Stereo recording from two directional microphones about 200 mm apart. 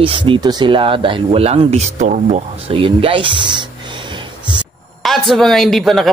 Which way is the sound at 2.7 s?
25° right (ahead or behind).